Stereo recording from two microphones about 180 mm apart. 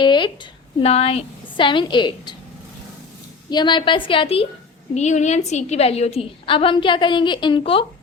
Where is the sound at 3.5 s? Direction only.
25° left (ahead or behind).